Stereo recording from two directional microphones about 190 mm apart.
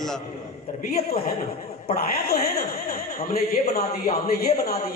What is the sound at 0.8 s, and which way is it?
A man's voice, 50° left (ahead or behind).